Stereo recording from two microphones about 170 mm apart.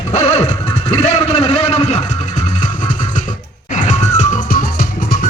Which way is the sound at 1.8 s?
45° left (ahead or behind).